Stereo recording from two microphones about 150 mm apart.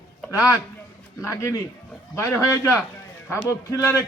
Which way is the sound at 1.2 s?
20° left (ahead or behind).